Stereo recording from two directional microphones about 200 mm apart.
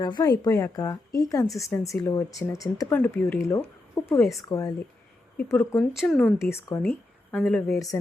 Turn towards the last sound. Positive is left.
turn(degrees=5)  # may be behind; listen again after turning